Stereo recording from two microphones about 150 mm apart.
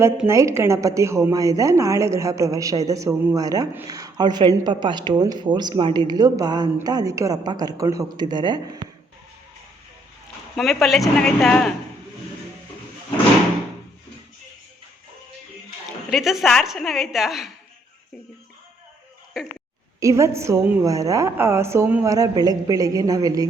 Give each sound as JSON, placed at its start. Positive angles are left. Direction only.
{"t": 0.3, "sound": "a woman's voice", "side_deg": -20}
{"t": 10.6, "sound": "a woman's voice", "side_deg": 0}
{"t": 16.0, "sound": "a woman's voice", "side_deg": 0}
{"t": 20.0, "sound": "a woman's voice", "side_deg": -20}